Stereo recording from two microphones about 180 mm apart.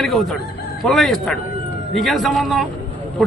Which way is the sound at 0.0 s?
Centre (ahead or behind).